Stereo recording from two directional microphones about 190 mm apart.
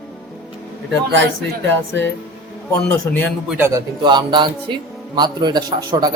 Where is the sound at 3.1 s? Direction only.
15° left (ahead or behind).